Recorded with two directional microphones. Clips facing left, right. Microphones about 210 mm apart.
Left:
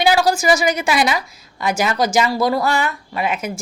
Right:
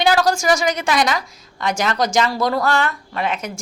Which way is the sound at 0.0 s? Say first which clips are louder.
Left 1 dB; 10° left (ahead or behind).